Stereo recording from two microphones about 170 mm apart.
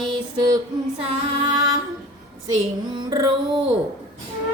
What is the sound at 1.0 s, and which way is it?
Female singing, 25° right (ahead or behind).